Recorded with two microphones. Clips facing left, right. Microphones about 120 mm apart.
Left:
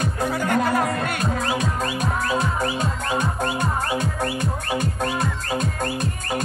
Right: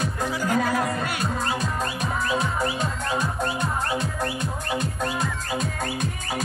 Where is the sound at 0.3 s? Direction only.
60° left (ahead or behind).